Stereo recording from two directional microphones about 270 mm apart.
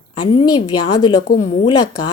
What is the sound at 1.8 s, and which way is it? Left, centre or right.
Speech, left.